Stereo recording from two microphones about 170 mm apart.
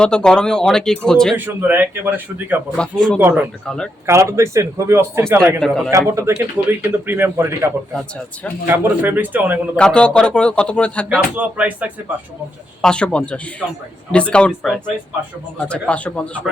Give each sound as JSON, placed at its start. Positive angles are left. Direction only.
{"t": 0.0, "sound": "a man's voice", "side_deg": 5}
{"t": 1.6, "sound": "speech", "side_deg": -10}
{"t": 2.7, "sound": "a man's voice", "side_deg": 5}
{"t": 3.2, "sound": "speech", "side_deg": -10}
{"t": 5.5, "sound": "a man's voice", "side_deg": 0}
{"t": 5.9, "sound": "speech", "side_deg": -20}
{"t": 9.7, "sound": "a man's voice", "side_deg": 5}
{"t": 11.3, "sound": "speech", "side_deg": -10}
{"t": 12.8, "sound": "a man's voice", "side_deg": 5}